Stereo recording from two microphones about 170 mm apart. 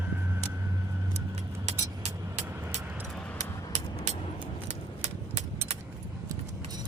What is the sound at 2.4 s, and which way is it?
Vehicle, 15° right (ahead or behind).